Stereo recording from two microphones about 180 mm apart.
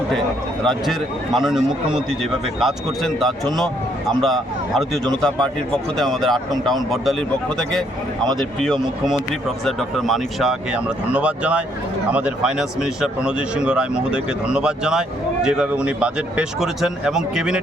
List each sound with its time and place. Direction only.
0.6 s speech: centre (ahead or behind)